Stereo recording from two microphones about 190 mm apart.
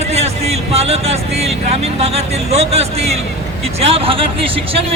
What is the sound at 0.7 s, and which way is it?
Speech, 35° right (ahead or behind).